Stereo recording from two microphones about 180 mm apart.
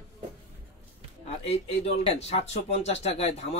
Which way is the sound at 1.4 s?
35° left (ahead or behind).